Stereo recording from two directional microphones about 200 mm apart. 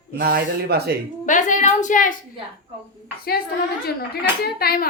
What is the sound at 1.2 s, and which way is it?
Speech, 40° left (ahead or behind).